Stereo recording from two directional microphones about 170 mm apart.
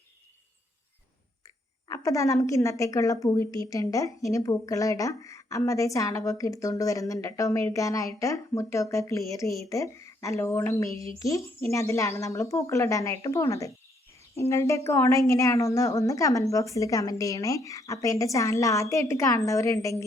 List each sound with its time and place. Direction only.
1.9 s a woman's voice: 20° left (ahead or behind)